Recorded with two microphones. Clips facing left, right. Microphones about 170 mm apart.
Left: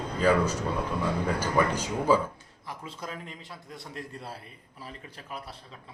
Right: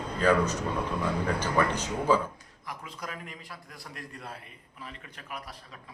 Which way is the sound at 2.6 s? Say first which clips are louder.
Left 1 dB; 30° left (ahead or behind).